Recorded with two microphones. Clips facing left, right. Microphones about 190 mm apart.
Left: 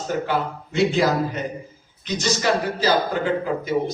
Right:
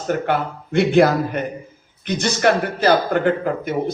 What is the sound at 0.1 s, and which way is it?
A man's voice, 60° right (ahead or behind).